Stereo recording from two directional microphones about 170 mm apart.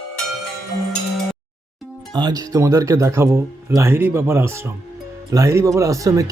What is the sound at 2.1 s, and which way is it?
Speech, 25° right (ahead or behind).